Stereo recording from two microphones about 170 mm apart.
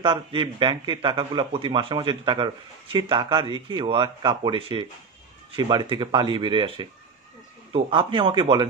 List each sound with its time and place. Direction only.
0.0 s speech: 30° right (ahead or behind)